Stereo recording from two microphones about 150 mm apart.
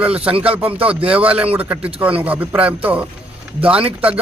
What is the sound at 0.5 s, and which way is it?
A man's voice, 10° right (ahead or behind).